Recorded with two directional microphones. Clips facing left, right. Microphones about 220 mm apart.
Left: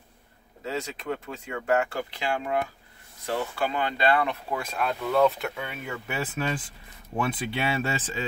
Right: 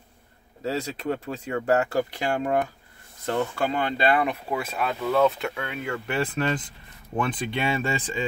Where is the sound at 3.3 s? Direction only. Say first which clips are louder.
Right 3 dB; 55° right (ahead or behind).